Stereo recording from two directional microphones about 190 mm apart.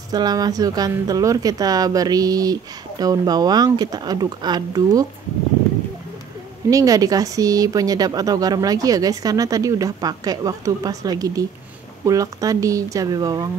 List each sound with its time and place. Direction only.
0.1 s a woman's voice: 20° right (ahead or behind)
6.7 s a woman's voice: 20° right (ahead or behind)